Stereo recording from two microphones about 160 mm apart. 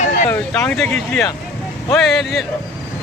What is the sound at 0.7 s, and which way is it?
Speech, 5° left (ahead or behind).